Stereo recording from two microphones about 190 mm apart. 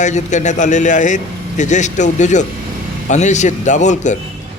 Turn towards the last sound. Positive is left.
turn(degrees=40)  # may be behind; listen again after turning